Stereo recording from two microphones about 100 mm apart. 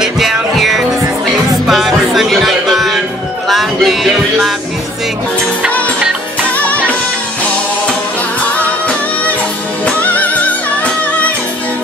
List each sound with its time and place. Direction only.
0.0 s music: 5° right (ahead or behind)
9.8 s music: 15° left (ahead or behind)